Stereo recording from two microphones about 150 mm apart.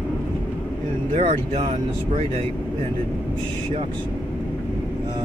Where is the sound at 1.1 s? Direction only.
40° right (ahead or behind).